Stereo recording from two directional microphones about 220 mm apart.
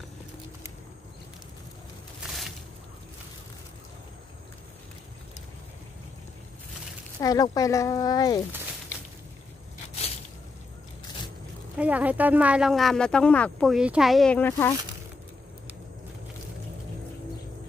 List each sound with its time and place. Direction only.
7.2 s speech: 15° left (ahead or behind)
11.7 s speech: 5° right (ahead or behind); by 14.8 s 10° left (ahead or behind)